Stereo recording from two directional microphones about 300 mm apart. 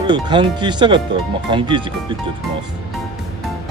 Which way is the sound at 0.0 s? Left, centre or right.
Centre.